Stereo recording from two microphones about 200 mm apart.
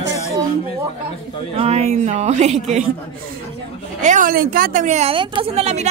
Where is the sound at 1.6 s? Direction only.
30° right (ahead or behind).